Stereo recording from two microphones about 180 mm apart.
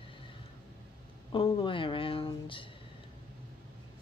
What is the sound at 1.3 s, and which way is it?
Speech, 25° left (ahead or behind).